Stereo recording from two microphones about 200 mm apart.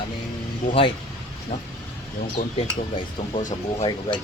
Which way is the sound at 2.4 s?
45° left (ahead or behind).